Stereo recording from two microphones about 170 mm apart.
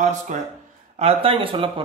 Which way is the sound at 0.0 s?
45° right (ahead or behind).